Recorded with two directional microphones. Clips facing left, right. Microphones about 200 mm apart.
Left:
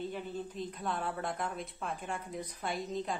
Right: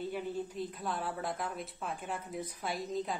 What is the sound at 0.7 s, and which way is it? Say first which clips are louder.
A woman's voice: left 1 dB; centre (ahead or behind).